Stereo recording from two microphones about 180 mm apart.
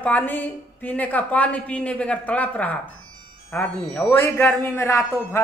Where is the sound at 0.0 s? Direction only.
10° left (ahead or behind).